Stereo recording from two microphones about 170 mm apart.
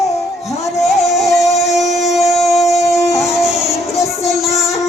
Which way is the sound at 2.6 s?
20° left (ahead or behind).